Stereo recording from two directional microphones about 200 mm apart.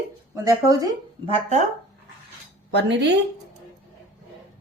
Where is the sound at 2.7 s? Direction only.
60° right (ahead or behind).